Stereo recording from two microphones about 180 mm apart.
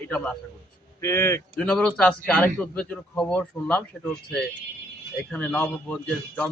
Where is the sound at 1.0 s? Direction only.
15° left (ahead or behind).